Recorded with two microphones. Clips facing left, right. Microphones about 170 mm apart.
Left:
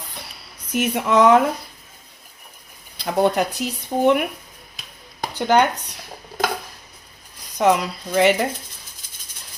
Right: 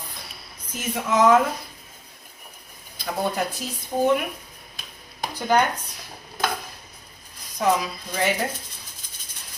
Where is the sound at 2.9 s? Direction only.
75° left (ahead or behind).